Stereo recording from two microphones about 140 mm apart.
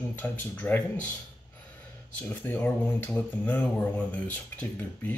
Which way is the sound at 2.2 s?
15° left (ahead or behind).